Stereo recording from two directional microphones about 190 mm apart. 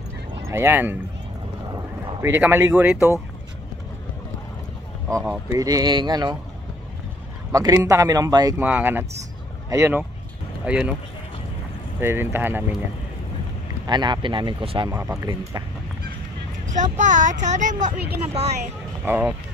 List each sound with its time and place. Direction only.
0.5 s speech: 10° right (ahead or behind)
5.5 s speech: 20° right (ahead or behind)
7.5 s speech: 20° right (ahead or behind)
12.0 s speech: 10° right (ahead or behind)
13.8 s speech: 20° right (ahead or behind)
14.9 s speech: 15° right (ahead or behind)
16.6 s speech: 40° right (ahead or behind)
19.0 s speech: 10° right (ahead or behind)